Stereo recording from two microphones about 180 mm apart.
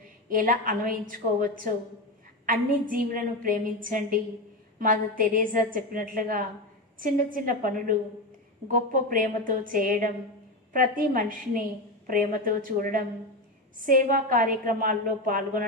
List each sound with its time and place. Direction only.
0.3 s a woman's voice: 50° right (ahead or behind)